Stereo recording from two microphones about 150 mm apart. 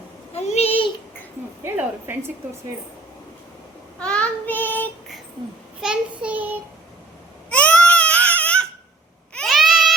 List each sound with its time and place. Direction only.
0.3 s a sound: 45° left (ahead or behind)
1.6 s child singing: 15° right (ahead or behind)
3.9 s child singing: 5° left (ahead or behind)
5.8 s child singing: 5° right (ahead or behind)
7.5 s baby cry: 10° left (ahead or behind)
9.3 s a sound: centre (ahead or behind)